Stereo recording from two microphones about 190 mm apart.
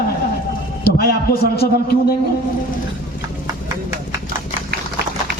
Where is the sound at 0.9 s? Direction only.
55° left (ahead or behind).